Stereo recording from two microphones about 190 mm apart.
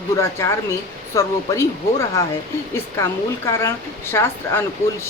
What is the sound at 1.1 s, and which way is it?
A woman's voice, 15° left (ahead or behind).